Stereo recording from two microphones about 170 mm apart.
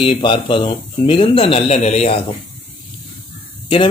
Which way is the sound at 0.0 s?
30° left (ahead or behind).